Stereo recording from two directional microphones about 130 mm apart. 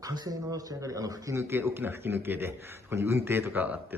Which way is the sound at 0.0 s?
30° right (ahead or behind).